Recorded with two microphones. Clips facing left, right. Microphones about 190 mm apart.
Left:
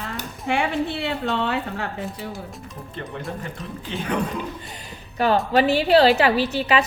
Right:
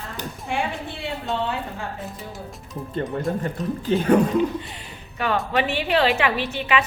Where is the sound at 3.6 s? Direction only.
45° right (ahead or behind).